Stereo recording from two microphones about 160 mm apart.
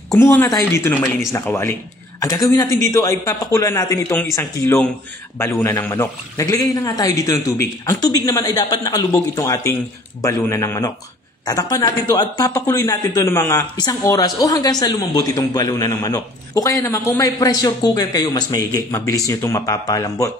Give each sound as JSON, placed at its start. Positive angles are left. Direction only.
{"t": 0.1, "sound": "a man's voice", "side_deg": 15}